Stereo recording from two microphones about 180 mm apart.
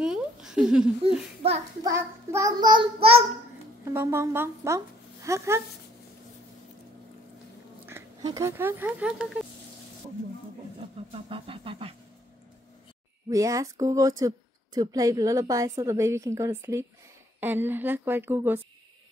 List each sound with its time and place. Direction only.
0.0 s a sound: 5° right (ahead or behind)
1.9 s child singing: 15° right (ahead or behind); by 3.3 s 35° right (ahead or behind)
3.8 s a woman's voice: 15° right (ahead or behind)
7.8 s speech: 15° right (ahead or behind)
11.1 s a sound: 30° right (ahead or behind)
13.3 s a woman's voice: 20° right (ahead or behind)